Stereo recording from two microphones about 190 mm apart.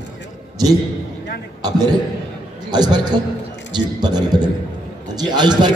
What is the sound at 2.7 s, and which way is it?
A man's voice, 20° right (ahead or behind).